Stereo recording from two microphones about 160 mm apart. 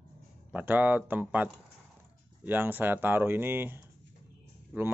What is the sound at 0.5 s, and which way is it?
Speech, 10° right (ahead or behind).